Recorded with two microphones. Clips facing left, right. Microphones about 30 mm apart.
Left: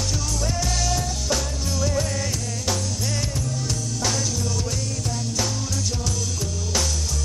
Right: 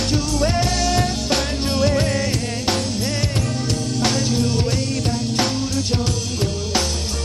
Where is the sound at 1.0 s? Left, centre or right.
Right.